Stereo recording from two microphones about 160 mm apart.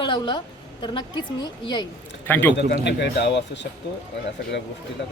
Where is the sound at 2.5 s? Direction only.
90° left.